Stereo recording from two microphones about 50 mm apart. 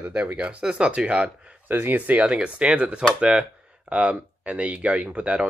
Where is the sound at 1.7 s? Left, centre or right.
Right.